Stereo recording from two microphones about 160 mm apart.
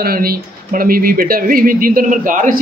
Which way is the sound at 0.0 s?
70° right (ahead or behind).